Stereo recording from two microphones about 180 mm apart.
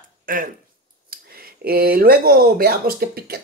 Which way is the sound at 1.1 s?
55° right (ahead or behind).